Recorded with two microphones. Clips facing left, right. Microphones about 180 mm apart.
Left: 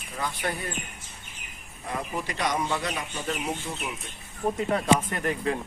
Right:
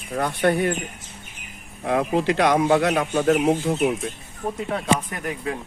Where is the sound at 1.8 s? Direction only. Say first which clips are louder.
Right 11 dB; 75° right (ahead or behind).